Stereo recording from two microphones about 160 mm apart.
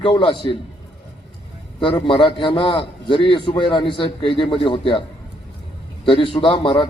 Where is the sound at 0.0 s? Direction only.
35° left (ahead or behind).